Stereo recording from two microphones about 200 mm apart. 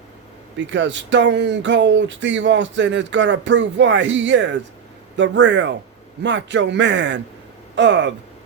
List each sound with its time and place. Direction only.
0.7 s speech: 65° right (ahead or behind)